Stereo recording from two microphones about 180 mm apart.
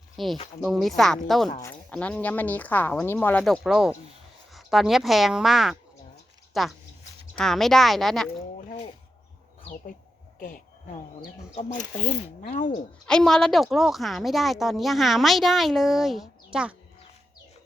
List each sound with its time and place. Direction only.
0.2 s a woman's voice: centre (ahead or behind)
12.4 s speech: 45° left (ahead or behind)
13.1 s speech: 5° left (ahead or behind)